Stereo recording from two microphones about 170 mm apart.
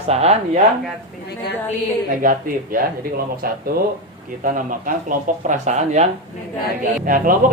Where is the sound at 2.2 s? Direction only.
55° right (ahead or behind).